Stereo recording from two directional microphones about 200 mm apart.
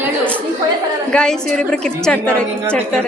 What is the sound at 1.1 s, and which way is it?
A woman's voice, 5° left (ahead or behind).